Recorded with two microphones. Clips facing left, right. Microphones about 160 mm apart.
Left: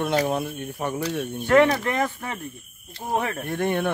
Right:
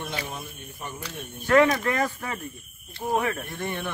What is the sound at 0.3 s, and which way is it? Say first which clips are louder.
Speech: left 12 dB; 65° left (ahead or behind).